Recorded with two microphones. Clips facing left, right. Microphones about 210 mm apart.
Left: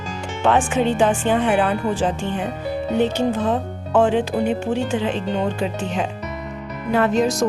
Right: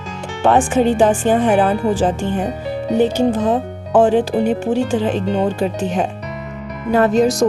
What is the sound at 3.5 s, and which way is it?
Speech, 45° right (ahead or behind).